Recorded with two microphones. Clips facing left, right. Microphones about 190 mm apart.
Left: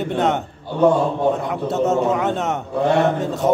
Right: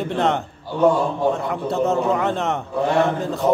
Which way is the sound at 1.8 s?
Centre (ahead or behind).